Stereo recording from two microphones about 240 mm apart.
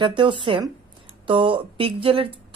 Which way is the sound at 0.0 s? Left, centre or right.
Centre.